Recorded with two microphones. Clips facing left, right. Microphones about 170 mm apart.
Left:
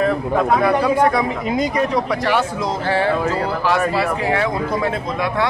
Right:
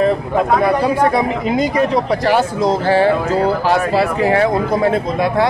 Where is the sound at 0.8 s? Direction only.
30° right (ahead or behind).